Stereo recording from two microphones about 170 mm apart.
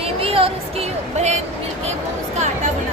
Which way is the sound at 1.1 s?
40° right (ahead or behind).